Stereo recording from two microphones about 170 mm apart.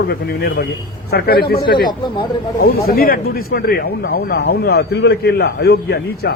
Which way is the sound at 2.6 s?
60° left (ahead or behind).